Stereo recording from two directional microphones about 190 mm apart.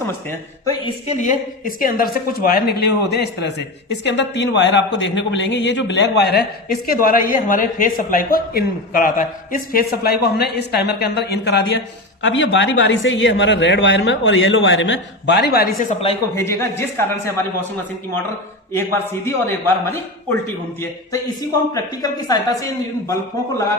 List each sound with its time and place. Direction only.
0.9 s a woman's voice: 35° left (ahead or behind); by 11.6 s 60° left (ahead or behind)
12.2 s speech: 75° left (ahead or behind); by 16.1 s 35° left (ahead or behind)
16.3 s a man's voice: 15° left (ahead or behind)
18.7 s a man's voice: 15° left (ahead or behind)
22.0 s a woman's voice: 20° left (ahead or behind)